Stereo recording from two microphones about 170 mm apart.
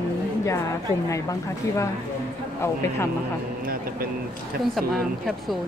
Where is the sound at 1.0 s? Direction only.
20° left (ahead or behind).